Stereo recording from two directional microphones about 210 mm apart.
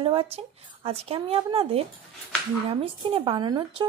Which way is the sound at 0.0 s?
25° right (ahead or behind).